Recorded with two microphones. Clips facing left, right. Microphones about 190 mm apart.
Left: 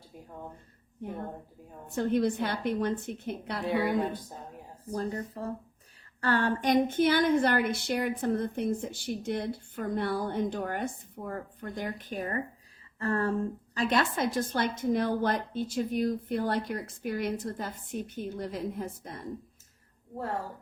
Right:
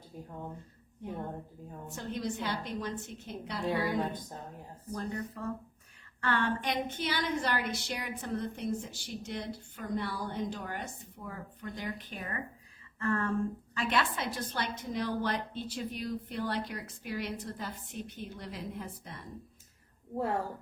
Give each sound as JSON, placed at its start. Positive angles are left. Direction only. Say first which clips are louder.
{"t": 2.0, "sound": "a woman's voice", "louder": "left 10 dB", "side_deg": 60}
{"t": 4.1, "sound": "a woman's voice", "louder": "left 2 dB", "side_deg": 10}
{"t": 4.9, "sound": "a woman's voice", "louder": "left 4 dB", "side_deg": 35}